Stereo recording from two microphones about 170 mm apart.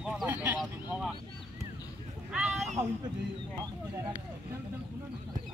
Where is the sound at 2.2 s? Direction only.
5° right (ahead or behind).